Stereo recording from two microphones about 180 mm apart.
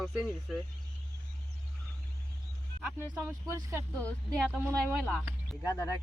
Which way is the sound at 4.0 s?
5° left (ahead or behind).